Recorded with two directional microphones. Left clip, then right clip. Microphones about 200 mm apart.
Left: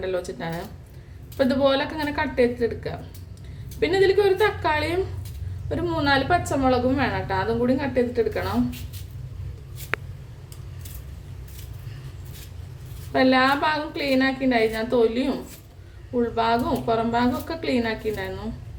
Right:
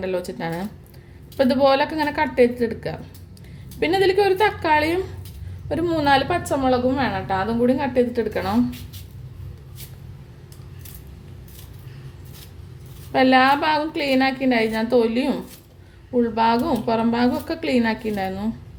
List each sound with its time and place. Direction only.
0.0 s a woman's voice: 40° right (ahead or behind)
13.1 s a woman's voice: 40° right (ahead or behind)